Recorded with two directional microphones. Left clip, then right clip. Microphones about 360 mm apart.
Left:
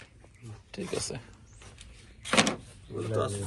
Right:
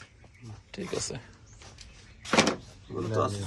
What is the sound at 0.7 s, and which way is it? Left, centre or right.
Speech, centre.